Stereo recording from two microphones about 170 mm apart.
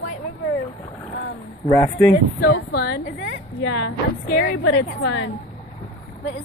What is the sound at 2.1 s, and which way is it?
A woman's voice, 65° left (ahead or behind).